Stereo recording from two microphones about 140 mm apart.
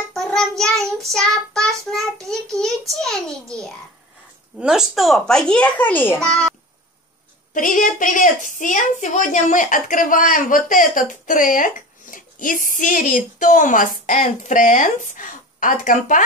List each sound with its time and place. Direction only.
0.1 s child singing: 5° left (ahead or behind)
2.9 s a child's voice: 5° left (ahead or behind)
7.5 s a woman's voice: 70° left (ahead or behind)